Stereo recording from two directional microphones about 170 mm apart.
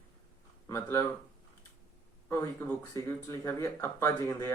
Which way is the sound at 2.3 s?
15° left (ahead or behind).